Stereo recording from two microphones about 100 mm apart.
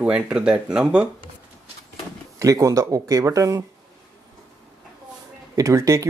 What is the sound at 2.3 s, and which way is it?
Speech, 35° right (ahead or behind).